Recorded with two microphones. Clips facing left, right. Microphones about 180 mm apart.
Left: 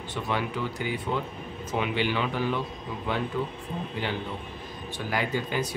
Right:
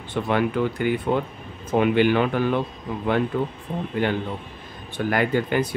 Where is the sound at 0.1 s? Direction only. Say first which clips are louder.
Right 8 dB; 55° right (ahead or behind).